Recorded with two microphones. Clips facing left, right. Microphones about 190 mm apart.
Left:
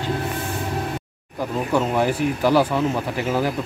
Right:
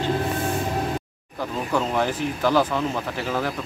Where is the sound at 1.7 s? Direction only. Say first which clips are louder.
Left 3 dB; 10° left (ahead or behind).